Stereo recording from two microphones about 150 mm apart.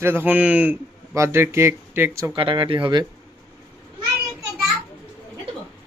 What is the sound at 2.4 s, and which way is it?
Speech, 35° right (ahead or behind).